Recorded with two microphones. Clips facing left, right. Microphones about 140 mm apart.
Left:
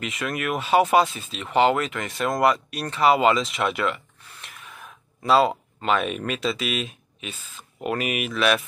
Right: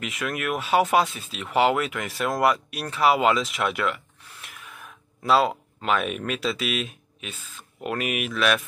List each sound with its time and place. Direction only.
0.0 s speech: centre (ahead or behind)